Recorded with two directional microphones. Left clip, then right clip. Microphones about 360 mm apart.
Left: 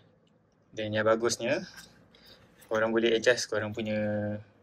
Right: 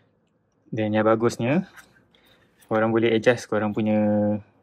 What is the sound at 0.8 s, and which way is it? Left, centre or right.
Speech, centre.